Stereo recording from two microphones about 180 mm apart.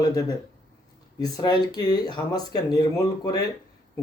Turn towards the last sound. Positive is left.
turn(degrees=20)  # may be behind; listen again after turning